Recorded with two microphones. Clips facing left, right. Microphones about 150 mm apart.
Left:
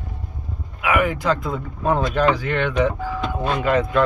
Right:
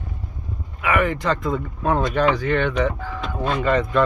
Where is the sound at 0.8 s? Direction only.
5° left (ahead or behind).